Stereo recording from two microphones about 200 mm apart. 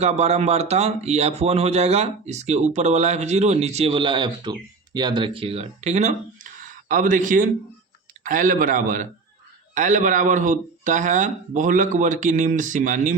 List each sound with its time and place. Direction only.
0.0 s speech: 30° right (ahead or behind)